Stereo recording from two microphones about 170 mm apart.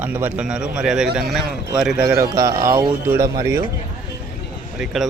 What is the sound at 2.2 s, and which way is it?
Speech, 20° right (ahead or behind).